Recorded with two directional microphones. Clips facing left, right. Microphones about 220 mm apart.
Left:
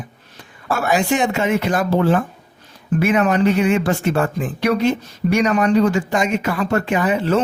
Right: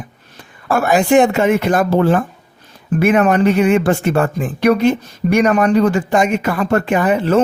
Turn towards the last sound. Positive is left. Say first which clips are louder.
# right 3 dB
turn(degrees=-55)  # may be behind; listen again after turning